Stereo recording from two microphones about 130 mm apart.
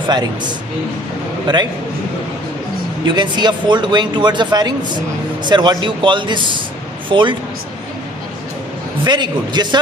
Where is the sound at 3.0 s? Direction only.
35° right (ahead or behind).